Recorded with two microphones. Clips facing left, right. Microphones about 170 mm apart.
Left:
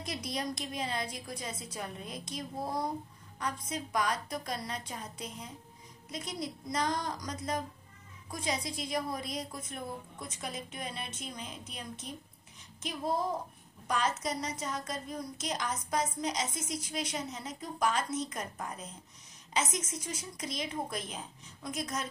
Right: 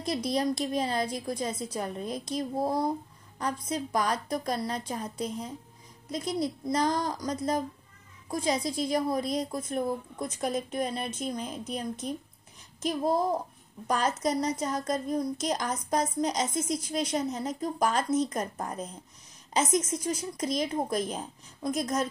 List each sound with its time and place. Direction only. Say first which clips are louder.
0.0 s a woman's voice: right 9 dB; 35° right (ahead or behind)